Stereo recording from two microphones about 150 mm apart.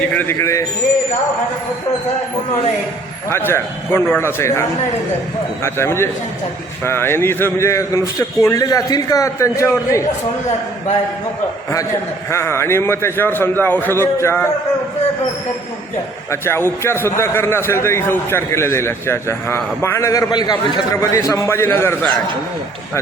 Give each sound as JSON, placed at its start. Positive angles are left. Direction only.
{"t": 0.1, "sound": "a man's voice", "side_deg": 15}
{"t": 3.2, "sound": "a man's voice", "side_deg": 15}
{"t": 5.6, "sound": "a man's voice", "side_deg": 15}
{"t": 12.3, "sound": "a man's voice", "side_deg": 15}
{"t": 16.3, "sound": "a man's voice", "side_deg": 15}